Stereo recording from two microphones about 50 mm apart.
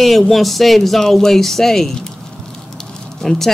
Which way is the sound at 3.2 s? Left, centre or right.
Centre.